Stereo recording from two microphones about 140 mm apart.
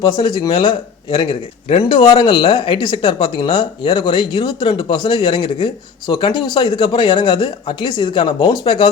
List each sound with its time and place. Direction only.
0.0 s speech: 35° left (ahead or behind)